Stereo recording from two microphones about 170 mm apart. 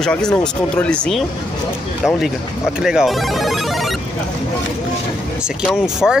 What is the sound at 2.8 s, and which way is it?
Speech, 5° right (ahead or behind).